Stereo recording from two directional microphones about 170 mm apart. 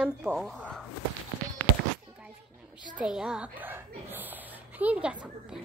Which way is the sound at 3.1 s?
5° right (ahead or behind).